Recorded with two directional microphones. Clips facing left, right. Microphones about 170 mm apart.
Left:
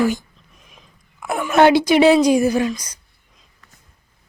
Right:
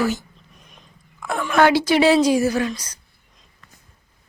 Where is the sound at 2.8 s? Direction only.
10° left (ahead or behind).